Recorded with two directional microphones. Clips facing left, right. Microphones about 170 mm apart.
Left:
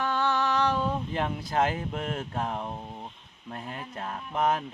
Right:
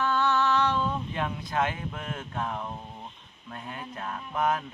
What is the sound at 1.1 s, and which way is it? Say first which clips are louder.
Speech: left 2 dB; 35° left (ahead or behind).